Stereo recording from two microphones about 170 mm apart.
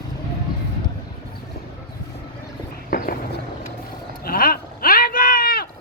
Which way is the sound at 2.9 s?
60° left (ahead or behind).